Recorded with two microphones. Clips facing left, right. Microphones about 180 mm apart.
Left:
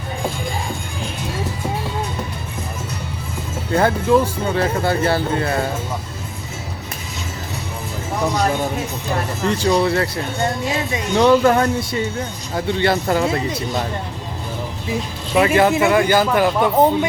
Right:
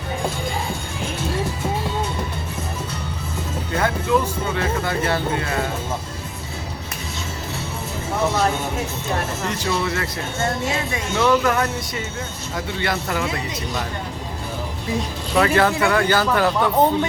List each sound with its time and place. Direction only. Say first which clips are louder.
3.7 s speech: left 5 dB; 30° left (ahead or behind)
9.5 s speech: left 9 dB; 35° left (ahead or behind)
11.1 s speech: left 5 dB; 35° left (ahead or behind)
15.4 s speech: left 3 dB; 15° left (ahead or behind)